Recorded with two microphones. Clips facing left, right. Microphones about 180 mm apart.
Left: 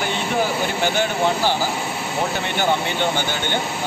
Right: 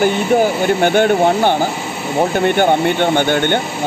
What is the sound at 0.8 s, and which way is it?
Speech, 55° right (ahead or behind).